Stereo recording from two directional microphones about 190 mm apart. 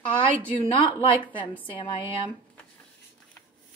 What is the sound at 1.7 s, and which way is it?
Speech, 25° left (ahead or behind).